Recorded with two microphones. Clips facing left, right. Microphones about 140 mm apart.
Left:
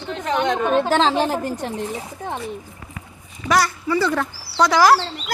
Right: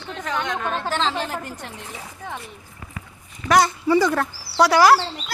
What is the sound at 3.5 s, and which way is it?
Speech, 20° right (ahead or behind).